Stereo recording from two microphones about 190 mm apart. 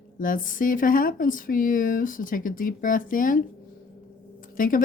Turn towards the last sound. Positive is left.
turn(degrees=45)  # may be behind; listen again after turning